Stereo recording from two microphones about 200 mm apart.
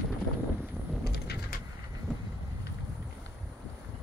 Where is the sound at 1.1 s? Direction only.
55° left (ahead or behind).